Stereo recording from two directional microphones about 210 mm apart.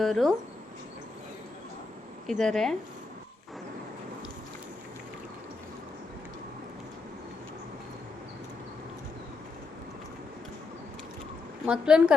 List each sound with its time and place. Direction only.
0.0 s speech: centre (ahead or behind)
2.4 s speech: centre (ahead or behind)
11.6 s speech: 5° right (ahead or behind)